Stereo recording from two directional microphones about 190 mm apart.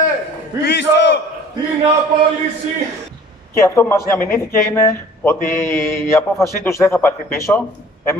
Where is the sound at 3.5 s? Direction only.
15° left (ahead or behind).